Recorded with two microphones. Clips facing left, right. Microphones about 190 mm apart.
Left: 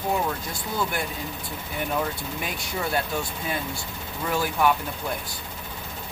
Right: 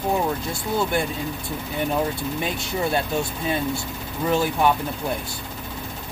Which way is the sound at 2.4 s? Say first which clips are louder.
Right 4 dB; 25° right (ahead or behind).